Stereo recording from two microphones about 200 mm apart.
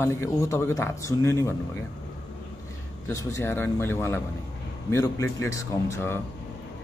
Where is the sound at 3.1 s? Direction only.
15° left (ahead or behind).